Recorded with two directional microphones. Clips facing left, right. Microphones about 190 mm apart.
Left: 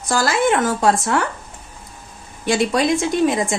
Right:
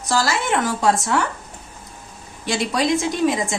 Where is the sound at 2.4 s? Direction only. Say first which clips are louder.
Left 4 dB; 55° left (ahead or behind).